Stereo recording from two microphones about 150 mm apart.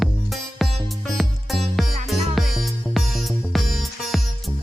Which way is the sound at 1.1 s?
Centre (ahead or behind).